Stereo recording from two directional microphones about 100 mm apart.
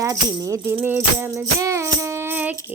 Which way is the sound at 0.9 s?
30° right (ahead or behind).